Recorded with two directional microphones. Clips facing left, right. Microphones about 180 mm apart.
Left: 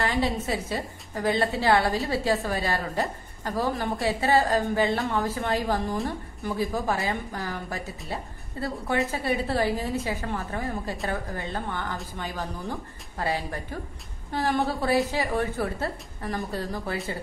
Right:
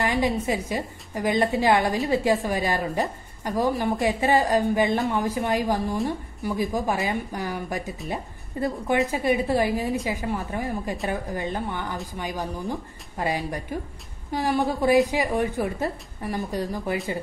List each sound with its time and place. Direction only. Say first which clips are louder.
0.0 s a woman's voice: right 3 dB; 15° right (ahead or behind)